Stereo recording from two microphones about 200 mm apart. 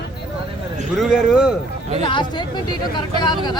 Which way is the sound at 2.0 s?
25° left (ahead or behind).